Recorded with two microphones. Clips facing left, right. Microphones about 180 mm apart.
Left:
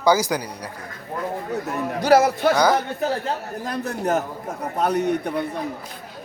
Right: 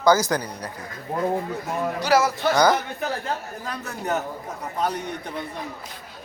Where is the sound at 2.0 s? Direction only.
55° left (ahead or behind).